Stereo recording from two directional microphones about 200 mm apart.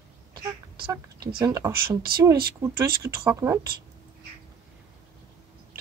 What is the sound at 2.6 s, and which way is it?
Speech, 15° right (ahead or behind).